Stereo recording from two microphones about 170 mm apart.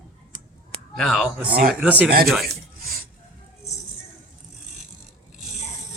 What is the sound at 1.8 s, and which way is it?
Speech, 10° right (ahead or behind).